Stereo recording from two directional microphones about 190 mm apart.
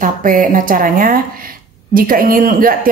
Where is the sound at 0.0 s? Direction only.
45° right (ahead or behind).